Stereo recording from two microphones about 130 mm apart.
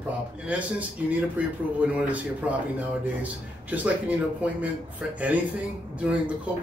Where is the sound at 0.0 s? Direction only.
10° right (ahead or behind).